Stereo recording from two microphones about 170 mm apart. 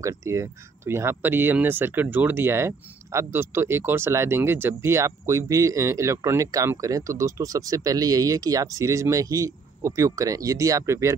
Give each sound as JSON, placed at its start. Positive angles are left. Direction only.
{"t": 0.0, "sound": "speech", "side_deg": -20}